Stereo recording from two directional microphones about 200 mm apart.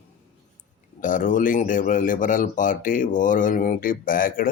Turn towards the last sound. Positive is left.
turn(degrees=45)  # may be behind; listen again after turning